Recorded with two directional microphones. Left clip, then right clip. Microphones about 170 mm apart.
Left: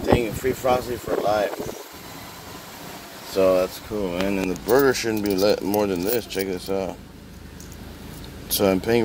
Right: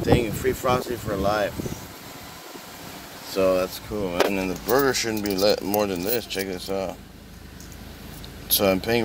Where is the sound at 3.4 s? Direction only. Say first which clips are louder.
Left 3 dB; 15° right (ahead or behind).